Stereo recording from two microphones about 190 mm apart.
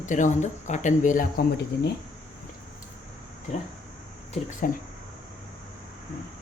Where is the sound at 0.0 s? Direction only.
40° left (ahead or behind).